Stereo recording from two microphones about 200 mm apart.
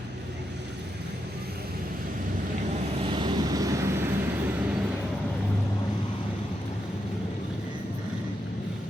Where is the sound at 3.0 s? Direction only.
25° right (ahead or behind).